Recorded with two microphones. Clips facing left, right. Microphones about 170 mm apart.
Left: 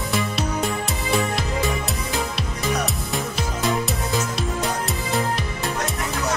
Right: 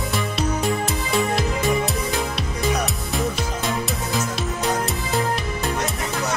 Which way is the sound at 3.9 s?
Centre (ahead or behind).